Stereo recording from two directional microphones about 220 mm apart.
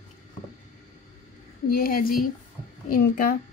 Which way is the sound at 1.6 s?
40° left (ahead or behind).